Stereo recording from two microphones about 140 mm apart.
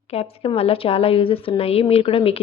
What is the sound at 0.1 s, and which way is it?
A woman's voice, 45° left (ahead or behind).